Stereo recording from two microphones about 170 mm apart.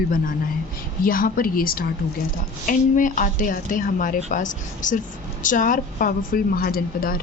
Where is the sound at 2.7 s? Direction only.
50° left (ahead or behind).